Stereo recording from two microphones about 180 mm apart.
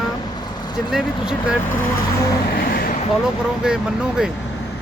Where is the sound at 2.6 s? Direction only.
55° left (ahead or behind).